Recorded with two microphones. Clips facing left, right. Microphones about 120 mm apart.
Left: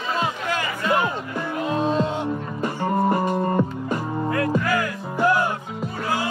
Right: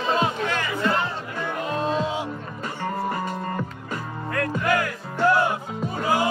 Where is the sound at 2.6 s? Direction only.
20° left (ahead or behind).